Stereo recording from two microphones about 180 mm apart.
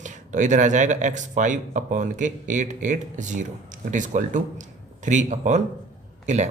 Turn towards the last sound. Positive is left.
turn(degrees=-40)  # may be behind; listen again after turning